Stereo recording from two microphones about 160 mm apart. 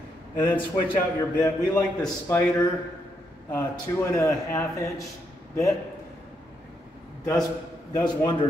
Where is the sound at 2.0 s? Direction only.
15° left (ahead or behind).